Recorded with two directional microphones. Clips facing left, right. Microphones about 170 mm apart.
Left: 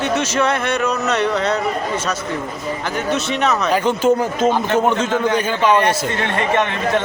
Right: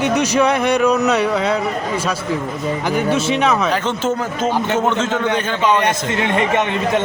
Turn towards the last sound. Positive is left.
turn(degrees=-15)  # may be behind; listen again after turning